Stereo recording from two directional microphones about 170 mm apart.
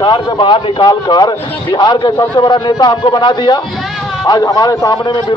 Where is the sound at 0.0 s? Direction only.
25° left (ahead or behind).